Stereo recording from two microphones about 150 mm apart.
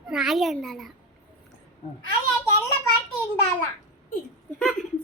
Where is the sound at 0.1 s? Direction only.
5° right (ahead or behind).